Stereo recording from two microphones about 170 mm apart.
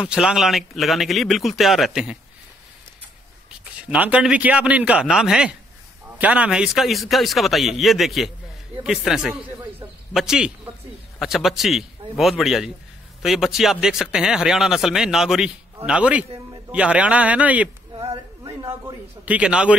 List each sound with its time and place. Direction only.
0.0 s speech: 5° right (ahead or behind)
3.9 s a man's voice: 10° right (ahead or behind)
17.9 s a sound: 25° right (ahead or behind)
19.2 s speech: 5° right (ahead or behind)